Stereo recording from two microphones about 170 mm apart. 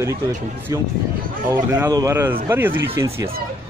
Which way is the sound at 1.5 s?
20° right (ahead or behind).